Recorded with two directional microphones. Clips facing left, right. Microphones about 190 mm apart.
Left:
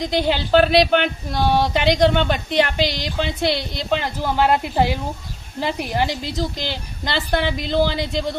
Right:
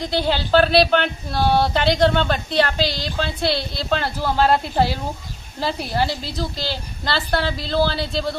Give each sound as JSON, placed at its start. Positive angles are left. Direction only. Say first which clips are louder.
{"t": 0.0, "sound": "speech", "louder": "left 1 dB", "side_deg": 15}